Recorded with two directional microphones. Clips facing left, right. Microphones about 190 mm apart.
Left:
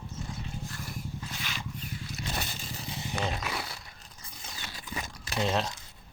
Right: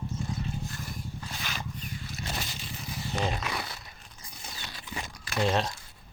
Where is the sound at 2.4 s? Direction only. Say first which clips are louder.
Left 1 dB; 55° left (ahead or behind).